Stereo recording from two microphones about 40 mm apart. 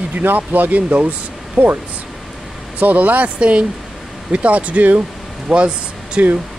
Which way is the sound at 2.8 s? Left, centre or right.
Right.